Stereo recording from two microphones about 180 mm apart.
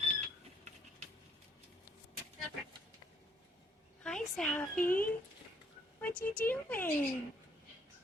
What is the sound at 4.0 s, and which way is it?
A woman's voice, 5° left (ahead or behind).